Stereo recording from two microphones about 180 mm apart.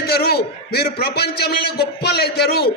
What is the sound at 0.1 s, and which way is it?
A man's voice, 60° left (ahead or behind).